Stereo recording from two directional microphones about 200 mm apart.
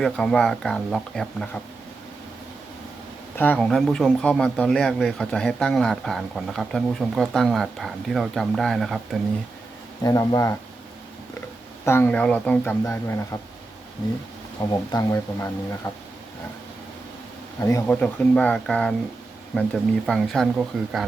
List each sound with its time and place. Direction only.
0.0 s speech: 5° left (ahead or behind)
3.3 s speech: 10° left (ahead or behind)
10.0 s speech: 15° left (ahead or behind)
11.9 s speech: 10° left (ahead or behind)
14.6 s speech: 20° left (ahead or behind)
17.6 s speech: 15° left (ahead or behind); by 21.1 s centre (ahead or behind)